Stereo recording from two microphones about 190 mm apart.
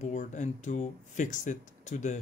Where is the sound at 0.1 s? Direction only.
40° left (ahead or behind).